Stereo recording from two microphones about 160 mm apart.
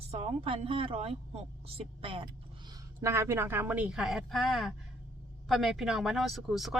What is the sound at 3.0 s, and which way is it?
Speech, 15° right (ahead or behind).